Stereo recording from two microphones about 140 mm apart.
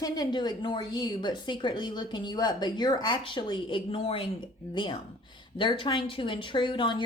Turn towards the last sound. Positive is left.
turn(degrees=35)  # may be behind; listen again after turning